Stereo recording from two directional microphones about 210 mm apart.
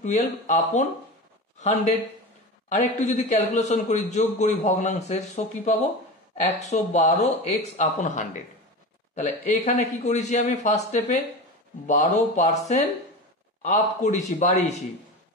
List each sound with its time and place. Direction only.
0.0 s a man's voice: 35° left (ahead or behind)
11.9 s a man's voice: 35° left (ahead or behind)